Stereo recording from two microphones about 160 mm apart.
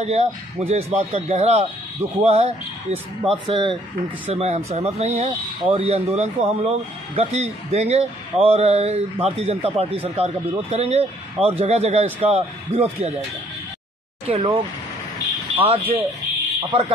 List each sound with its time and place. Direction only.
0.0 s a man's voice: 40° right (ahead or behind)
14.2 s a man's voice: 35° right (ahead or behind)